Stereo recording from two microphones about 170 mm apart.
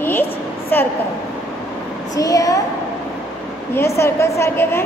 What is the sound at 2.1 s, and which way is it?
Speech, 20° left (ahead or behind).